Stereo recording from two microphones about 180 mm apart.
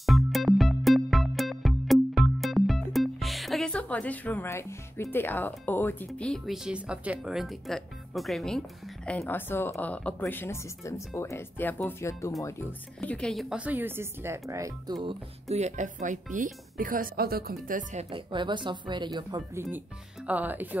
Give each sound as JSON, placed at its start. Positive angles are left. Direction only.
{"t": 0.0, "sound": "music", "side_deg": 0}
{"t": 12.4, "sound": "speech", "side_deg": 10}
{"t": 15.0, "sound": "speech", "side_deg": -35}
{"t": 18.1, "sound": "speech", "side_deg": -25}